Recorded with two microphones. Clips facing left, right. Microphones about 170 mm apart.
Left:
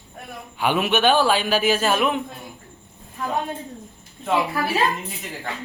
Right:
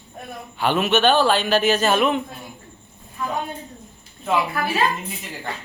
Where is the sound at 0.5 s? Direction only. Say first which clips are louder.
Right 1 dB; 10° left (ahead or behind).